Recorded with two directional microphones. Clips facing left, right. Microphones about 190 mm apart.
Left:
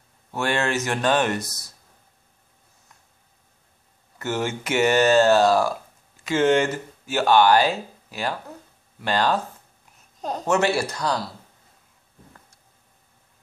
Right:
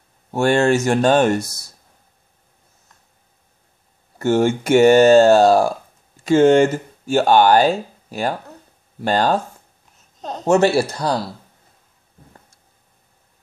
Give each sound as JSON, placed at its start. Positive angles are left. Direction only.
{"t": 0.3, "sound": "speech", "side_deg": -45}
{"t": 4.4, "sound": "speech", "side_deg": -45}
{"t": 10.4, "sound": "speech", "side_deg": -25}